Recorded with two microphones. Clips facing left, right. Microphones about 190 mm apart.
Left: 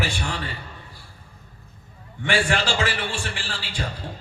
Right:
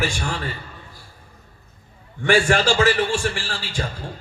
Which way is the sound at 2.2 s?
45° right (ahead or behind).